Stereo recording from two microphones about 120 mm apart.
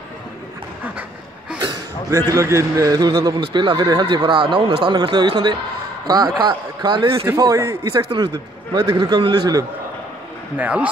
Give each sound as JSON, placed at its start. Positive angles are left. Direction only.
{"t": 2.3, "sound": "speech", "side_deg": -25}
{"t": 7.3, "sound": "speech", "side_deg": -35}
{"t": 10.6, "sound": "speech", "side_deg": -10}